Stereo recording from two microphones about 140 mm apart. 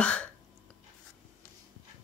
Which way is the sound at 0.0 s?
10° left (ahead or behind).